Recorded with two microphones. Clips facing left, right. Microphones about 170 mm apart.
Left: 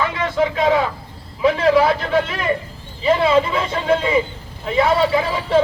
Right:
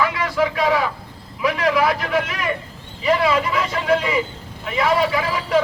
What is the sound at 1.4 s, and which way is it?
A man's voice, 30° left (ahead or behind).